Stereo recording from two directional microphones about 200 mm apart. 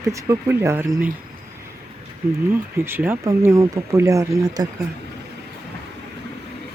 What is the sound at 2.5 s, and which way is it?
Speech, 10° right (ahead or behind).